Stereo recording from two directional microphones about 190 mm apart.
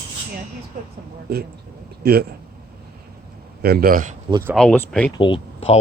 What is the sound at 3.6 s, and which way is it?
Speech, 55° right (ahead or behind).